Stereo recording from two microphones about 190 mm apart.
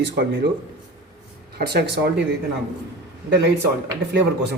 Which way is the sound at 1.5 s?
60° right (ahead or behind).